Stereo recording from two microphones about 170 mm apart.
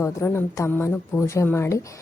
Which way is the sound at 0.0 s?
15° left (ahead or behind).